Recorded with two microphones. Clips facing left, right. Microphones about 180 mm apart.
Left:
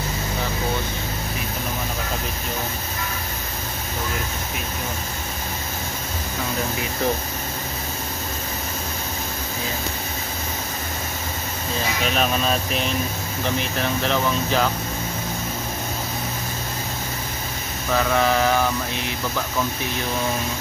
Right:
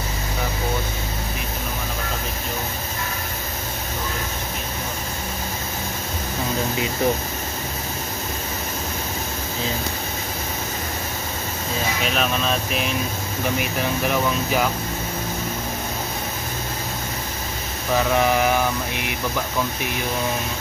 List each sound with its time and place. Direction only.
12.1 s vehicle: centre (ahead or behind)
13.4 s speech: 10° right (ahead or behind)
17.9 s speech: 15° right (ahead or behind)